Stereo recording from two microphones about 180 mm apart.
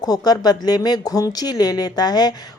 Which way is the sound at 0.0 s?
20° left (ahead or behind).